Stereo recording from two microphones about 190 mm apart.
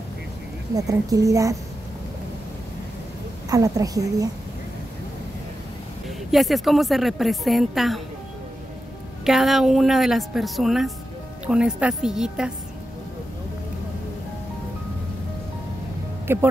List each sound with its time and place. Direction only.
0.7 s a woman's voice: 20° right (ahead or behind)
3.4 s a woman's voice: 15° right (ahead or behind)
6.0 s speech: centre (ahead or behind)
9.2 s speech: centre (ahead or behind)
16.3 s a woman's voice: 10° right (ahead or behind)